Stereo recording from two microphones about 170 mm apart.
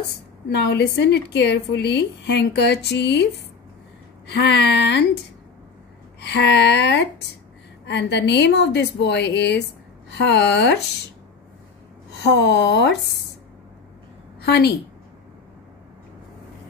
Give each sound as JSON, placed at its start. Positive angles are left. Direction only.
{"t": 0.5, "sound": "a woman's voice", "side_deg": 90}
{"t": 4.3, "sound": "a woman's voice", "side_deg": 80}
{"t": 6.2, "sound": "a woman's voice", "side_deg": 90}
{"t": 12.1, "sound": "speech", "side_deg": 85}
{"t": 14.4, "sound": "a woman's voice", "side_deg": 75}